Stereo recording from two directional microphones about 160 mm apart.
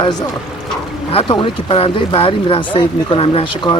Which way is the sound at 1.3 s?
35° left (ahead or behind).